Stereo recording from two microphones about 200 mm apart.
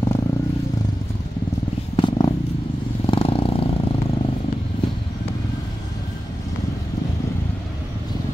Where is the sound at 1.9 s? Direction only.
25° left (ahead or behind).